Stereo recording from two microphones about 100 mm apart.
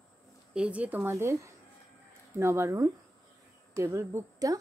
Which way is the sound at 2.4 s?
30° right (ahead or behind).